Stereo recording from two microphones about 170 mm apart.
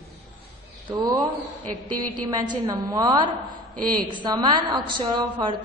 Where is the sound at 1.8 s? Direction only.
25° right (ahead or behind).